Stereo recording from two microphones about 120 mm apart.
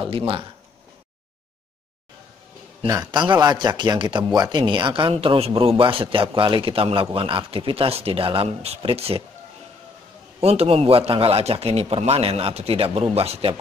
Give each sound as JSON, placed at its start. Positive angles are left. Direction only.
{"t": 0.0, "sound": "speech", "side_deg": -50}
{"t": 3.1, "sound": "speech", "side_deg": -40}
{"t": 5.1, "sound": "speech", "side_deg": -55}
{"t": 10.4, "sound": "a man's voice", "side_deg": -55}